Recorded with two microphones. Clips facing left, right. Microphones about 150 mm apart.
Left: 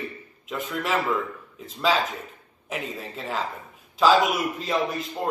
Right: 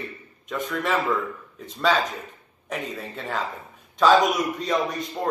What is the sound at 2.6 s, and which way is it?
Speech, 5° left (ahead or behind).